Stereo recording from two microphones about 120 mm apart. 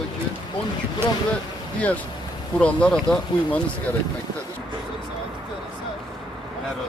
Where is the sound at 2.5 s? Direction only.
10° left (ahead or behind).